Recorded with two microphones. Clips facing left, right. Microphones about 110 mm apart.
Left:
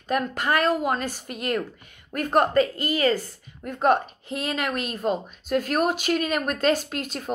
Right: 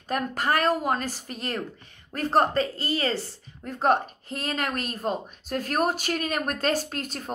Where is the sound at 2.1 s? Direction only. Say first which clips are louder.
Left 2 dB; 35° right (ahead or behind).